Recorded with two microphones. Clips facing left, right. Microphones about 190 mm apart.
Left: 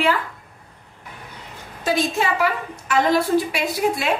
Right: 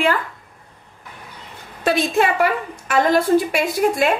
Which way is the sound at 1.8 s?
60° right (ahead or behind).